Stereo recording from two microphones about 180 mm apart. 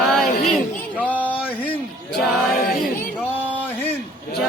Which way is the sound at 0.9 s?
10° left (ahead or behind).